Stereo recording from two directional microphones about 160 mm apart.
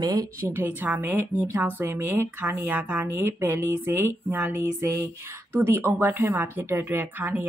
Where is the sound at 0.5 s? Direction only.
10° right (ahead or behind).